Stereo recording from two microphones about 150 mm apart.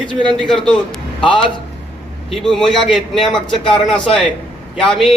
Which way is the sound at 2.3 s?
Centre (ahead or behind).